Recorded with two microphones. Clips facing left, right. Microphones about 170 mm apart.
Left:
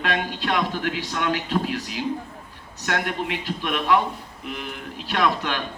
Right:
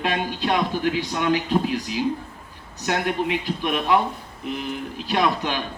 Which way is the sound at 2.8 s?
15° right (ahead or behind).